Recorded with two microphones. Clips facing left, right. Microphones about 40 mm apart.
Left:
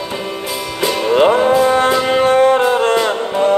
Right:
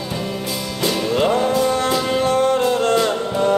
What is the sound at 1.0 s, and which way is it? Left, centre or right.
Music, left.